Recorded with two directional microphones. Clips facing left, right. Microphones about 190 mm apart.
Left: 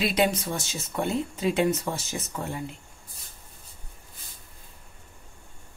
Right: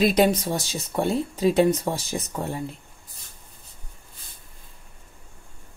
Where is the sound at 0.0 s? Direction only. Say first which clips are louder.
Right 5 dB; 40° right (ahead or behind).